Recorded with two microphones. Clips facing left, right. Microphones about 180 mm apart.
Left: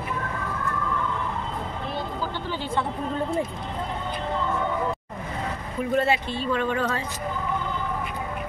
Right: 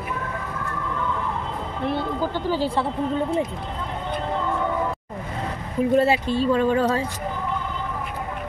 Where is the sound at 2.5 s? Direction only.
35° right (ahead or behind).